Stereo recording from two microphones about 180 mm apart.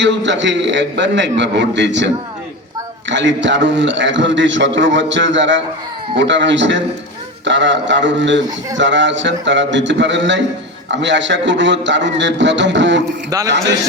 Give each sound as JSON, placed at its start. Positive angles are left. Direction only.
{"t": 0.0, "sound": "a man's voice", "side_deg": -85}
{"t": 13.3, "sound": "a man's voice", "side_deg": -20}